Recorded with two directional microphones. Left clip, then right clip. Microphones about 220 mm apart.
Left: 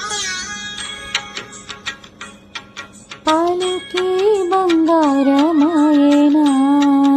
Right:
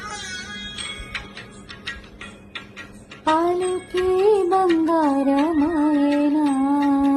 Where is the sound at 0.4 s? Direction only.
35° left (ahead or behind).